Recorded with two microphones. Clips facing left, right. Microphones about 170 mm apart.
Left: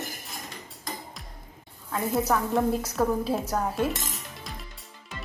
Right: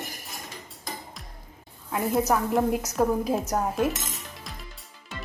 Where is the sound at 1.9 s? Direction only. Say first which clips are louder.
Right 2 dB; 10° right (ahead or behind).